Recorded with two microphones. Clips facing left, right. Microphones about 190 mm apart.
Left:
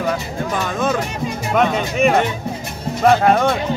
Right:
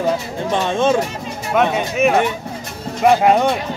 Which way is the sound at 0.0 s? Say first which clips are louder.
Right 2 dB; 25° right (ahead or behind).